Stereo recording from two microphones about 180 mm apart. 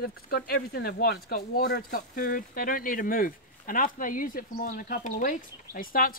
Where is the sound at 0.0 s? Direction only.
60° left (ahead or behind).